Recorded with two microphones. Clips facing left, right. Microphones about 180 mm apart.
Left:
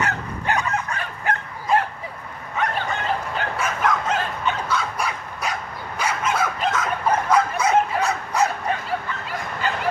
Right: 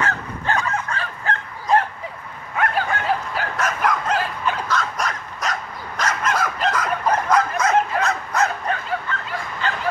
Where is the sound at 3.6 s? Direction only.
5° left (ahead or behind).